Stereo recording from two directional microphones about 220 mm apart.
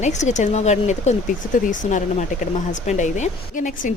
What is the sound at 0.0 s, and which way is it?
Speech, 30° left (ahead or behind).